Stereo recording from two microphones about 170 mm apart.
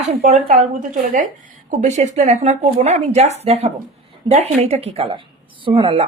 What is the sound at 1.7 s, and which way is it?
Speech, 45° right (ahead or behind).